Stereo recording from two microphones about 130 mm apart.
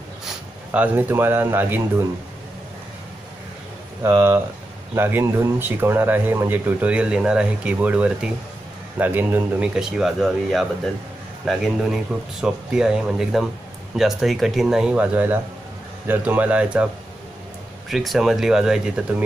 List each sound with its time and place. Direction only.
0.7 s speech: 15° right (ahead or behind)
4.0 s speech: 15° right (ahead or behind)